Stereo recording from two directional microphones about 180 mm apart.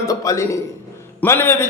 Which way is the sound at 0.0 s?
20° left (ahead or behind).